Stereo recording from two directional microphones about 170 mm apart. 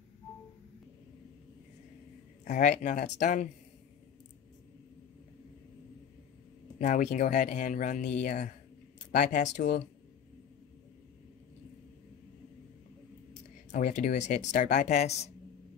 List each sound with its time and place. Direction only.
2.4 s speech: 45° left (ahead or behind)
6.8 s speech: 45° left (ahead or behind)
13.7 s speech: 50° left (ahead or behind)